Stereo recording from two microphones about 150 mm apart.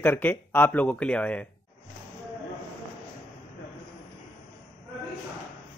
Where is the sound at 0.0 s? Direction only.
10° left (ahead or behind).